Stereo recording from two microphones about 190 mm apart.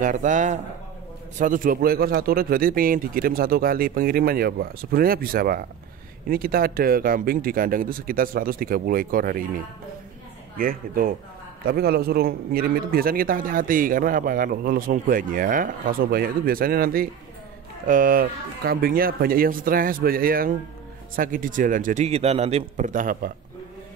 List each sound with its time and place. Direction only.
0.0 s a man's voice: 45° right (ahead or behind)
10.6 s a man's voice: 50° right (ahead or behind)